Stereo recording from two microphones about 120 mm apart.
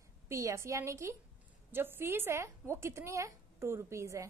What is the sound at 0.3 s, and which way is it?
A woman's voice, 25° right (ahead or behind).